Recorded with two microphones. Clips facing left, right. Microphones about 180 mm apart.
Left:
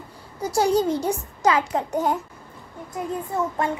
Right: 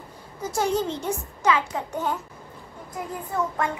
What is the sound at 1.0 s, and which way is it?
A child's voice, 40° left (ahead or behind).